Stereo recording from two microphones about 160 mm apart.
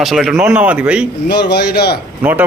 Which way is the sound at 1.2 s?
90° left.